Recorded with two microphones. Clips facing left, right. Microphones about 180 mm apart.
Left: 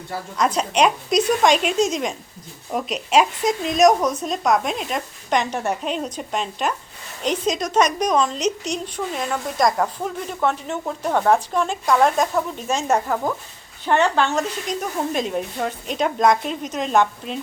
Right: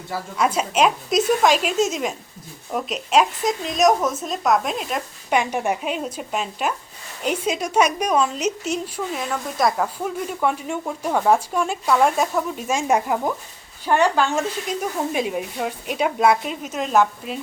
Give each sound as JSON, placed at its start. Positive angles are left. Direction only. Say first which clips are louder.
{"t": 0.3, "sound": "a woman's voice", "louder": "left 1 dB", "side_deg": -5}